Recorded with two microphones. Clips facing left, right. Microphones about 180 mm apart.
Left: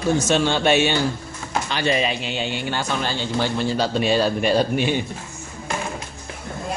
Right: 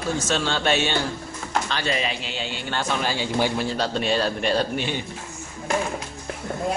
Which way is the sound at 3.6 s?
5° left (ahead or behind).